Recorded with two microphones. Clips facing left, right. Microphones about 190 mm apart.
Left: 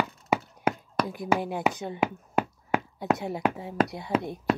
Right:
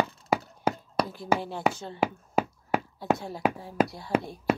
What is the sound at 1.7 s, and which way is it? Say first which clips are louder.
Speech: left 1 dB; 15° left (ahead or behind).